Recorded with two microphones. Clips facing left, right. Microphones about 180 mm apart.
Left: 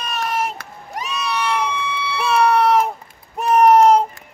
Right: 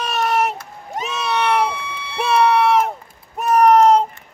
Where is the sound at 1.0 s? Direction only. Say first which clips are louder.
Right 3 dB; 25° right (ahead or behind).